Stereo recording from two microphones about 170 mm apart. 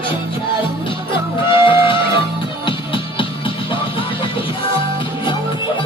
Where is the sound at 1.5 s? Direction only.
30° left (ahead or behind).